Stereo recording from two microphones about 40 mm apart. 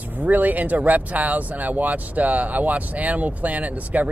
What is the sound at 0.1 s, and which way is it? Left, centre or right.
Speech, right.